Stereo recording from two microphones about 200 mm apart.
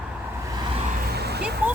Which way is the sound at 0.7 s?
30° right (ahead or behind).